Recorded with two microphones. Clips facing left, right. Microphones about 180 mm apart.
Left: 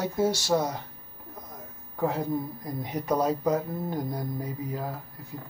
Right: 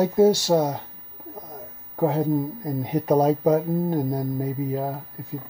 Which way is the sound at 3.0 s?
30° right (ahead or behind).